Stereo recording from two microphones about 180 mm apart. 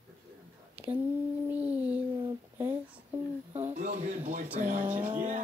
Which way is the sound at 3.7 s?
45° right (ahead or behind).